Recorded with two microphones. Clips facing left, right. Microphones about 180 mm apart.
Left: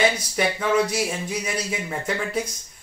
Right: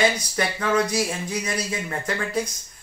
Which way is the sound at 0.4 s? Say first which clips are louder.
Left 2 dB; 5° left (ahead or behind).